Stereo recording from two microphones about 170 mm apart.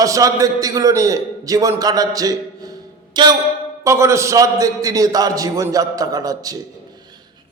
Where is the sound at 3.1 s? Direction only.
25° right (ahead or behind).